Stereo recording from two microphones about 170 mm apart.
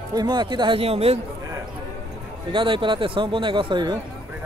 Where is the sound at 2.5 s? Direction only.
30° right (ahead or behind).